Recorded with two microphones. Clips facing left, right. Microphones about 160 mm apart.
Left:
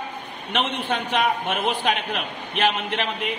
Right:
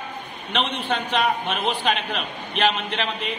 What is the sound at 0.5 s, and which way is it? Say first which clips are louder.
A man's voice: even; 15° left (ahead or behind).